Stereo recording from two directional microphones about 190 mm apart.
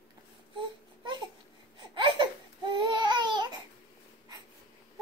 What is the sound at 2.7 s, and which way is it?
Babbling, 25° right (ahead or behind).